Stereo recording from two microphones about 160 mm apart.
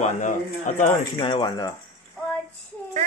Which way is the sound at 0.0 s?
50° left (ahead or behind).